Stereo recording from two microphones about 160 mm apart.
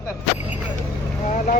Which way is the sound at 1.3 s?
50° left (ahead or behind).